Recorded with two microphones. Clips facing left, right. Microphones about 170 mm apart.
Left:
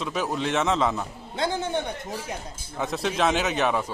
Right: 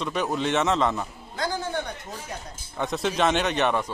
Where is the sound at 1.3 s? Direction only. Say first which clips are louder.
Left 2 dB; 25° left (ahead or behind).